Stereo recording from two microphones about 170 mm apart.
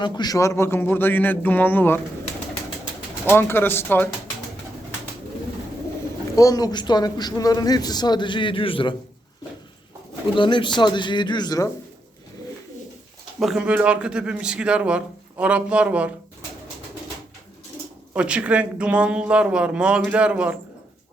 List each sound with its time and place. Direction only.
0.0 s a man's voice: 25° left (ahead or behind)
3.2 s a man's voice: 15° left (ahead or behind)
6.3 s a man's voice: 20° left (ahead or behind)
10.3 s a man's voice: 30° left (ahead or behind)
13.4 s speech: 5° right (ahead or behind)
18.1 s speech: 5° right (ahead or behind)